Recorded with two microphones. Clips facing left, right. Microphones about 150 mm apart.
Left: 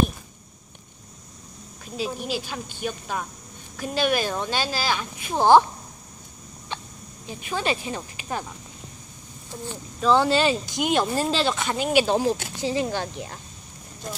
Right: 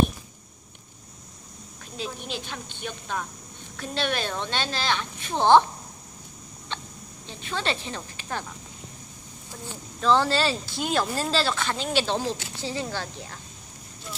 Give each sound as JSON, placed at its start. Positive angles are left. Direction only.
{"t": 2.0, "sound": "speech", "side_deg": 5}
{"t": 6.7, "sound": "hiccup", "side_deg": 10}
{"t": 7.2, "sound": "speech", "side_deg": 10}
{"t": 9.9, "sound": "speech", "side_deg": 10}
{"t": 14.0, "sound": "speech", "side_deg": 45}